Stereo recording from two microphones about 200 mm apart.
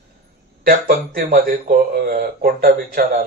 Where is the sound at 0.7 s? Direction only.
45° right (ahead or behind).